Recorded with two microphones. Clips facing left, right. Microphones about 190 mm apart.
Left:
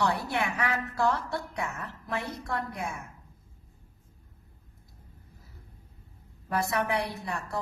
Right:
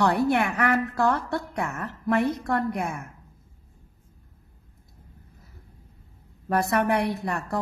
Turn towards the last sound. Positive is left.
turn(degrees=-55)  # may be behind; listen again after turning